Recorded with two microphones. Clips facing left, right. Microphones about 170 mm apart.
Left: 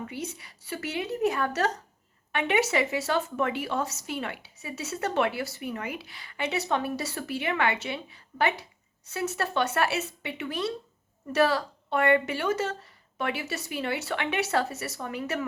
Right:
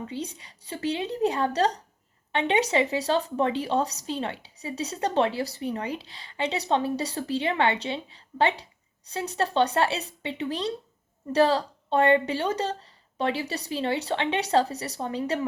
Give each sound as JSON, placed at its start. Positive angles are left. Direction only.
{"t": 0.1, "sound": "speech", "side_deg": -25}